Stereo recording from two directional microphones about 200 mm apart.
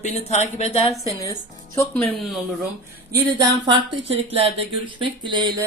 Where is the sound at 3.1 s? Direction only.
20° right (ahead or behind).